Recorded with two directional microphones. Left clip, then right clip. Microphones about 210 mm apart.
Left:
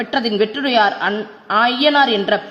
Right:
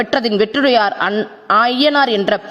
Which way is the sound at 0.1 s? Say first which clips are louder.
Right 3 dB; 45° right (ahead or behind).